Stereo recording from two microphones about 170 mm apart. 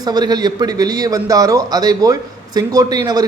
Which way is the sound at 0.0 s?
25° right (ahead or behind).